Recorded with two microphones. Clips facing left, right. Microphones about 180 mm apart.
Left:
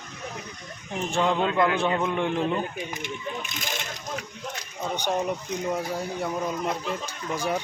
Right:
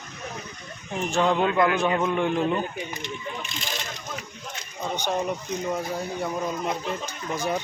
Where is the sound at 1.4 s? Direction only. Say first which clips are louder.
Right 1 dB; 25° left (ahead or behind).